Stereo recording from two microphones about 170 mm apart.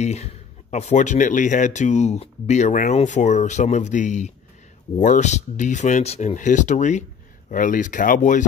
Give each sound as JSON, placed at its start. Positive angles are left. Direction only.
{"t": 0.0, "sound": "speech", "side_deg": 40}